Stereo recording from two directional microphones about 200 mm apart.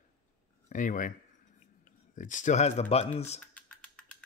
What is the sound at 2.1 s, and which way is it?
Speech, 40° left (ahead or behind).